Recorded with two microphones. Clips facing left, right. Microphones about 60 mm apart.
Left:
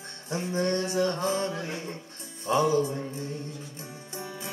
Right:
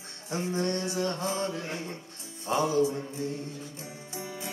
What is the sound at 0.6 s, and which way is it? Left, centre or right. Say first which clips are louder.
Music: left 5 dB; left.